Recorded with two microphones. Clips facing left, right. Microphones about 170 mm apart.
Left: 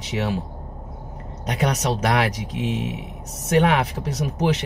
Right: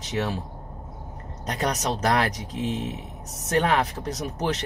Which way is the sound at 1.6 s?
5° left (ahead or behind).